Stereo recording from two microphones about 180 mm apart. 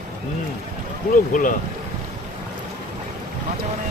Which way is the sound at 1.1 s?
45° left (ahead or behind).